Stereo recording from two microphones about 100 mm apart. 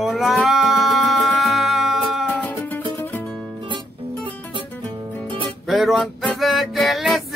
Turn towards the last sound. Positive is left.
turn(degrees=0)  # may be behind; listen again after turning